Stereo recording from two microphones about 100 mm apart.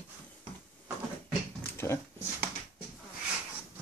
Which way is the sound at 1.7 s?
25° left (ahead or behind).